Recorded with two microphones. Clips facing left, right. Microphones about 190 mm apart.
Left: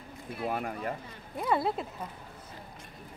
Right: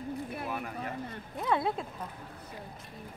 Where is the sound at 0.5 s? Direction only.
50° left (ahead or behind).